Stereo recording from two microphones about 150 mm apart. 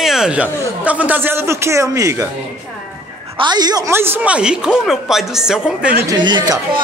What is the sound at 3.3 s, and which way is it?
Speech, 30° right (ahead or behind).